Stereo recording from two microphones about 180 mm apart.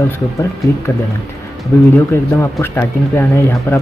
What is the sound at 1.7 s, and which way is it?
Speech, 15° left (ahead or behind).